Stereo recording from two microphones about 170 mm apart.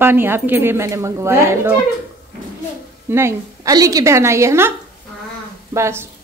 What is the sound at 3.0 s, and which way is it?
Speech, 15° right (ahead or behind).